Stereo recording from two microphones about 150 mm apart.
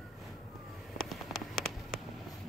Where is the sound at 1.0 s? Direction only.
Centre (ahead or behind).